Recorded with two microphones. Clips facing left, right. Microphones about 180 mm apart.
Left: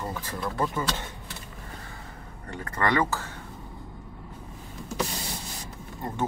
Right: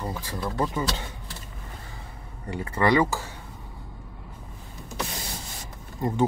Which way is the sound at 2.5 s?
10° right (ahead or behind).